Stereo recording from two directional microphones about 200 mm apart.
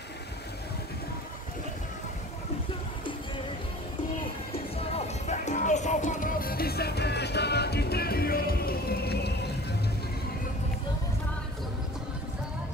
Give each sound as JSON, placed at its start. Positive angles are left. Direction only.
{"t": 4.9, "sound": "music", "side_deg": 35}